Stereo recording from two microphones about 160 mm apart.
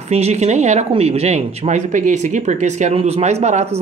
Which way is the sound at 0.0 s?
40° right (ahead or behind).